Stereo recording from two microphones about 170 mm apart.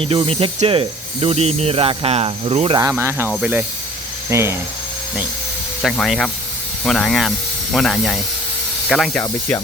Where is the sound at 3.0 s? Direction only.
15° right (ahead or behind).